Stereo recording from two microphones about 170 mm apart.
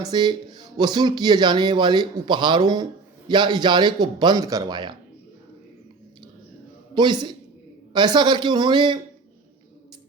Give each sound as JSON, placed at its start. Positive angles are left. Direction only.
{"t": 0.0, "sound": "speech", "side_deg": -25}
{"t": 6.9, "sound": "speech", "side_deg": -25}